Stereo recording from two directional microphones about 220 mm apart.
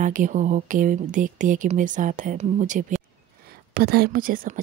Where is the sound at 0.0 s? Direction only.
35° right (ahead or behind).